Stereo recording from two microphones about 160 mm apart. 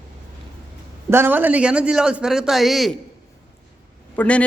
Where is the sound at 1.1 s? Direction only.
15° right (ahead or behind).